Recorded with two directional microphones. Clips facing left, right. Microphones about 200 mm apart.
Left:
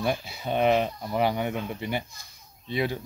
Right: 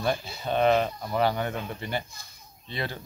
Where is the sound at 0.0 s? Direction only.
10° left (ahead or behind).